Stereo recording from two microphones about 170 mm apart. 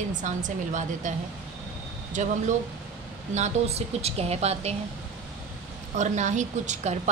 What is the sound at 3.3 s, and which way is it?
A woman's voice, 40° right (ahead or behind).